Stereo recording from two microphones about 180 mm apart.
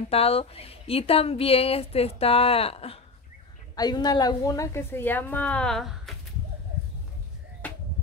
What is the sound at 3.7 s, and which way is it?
A woman's voice, 20° left (ahead or behind).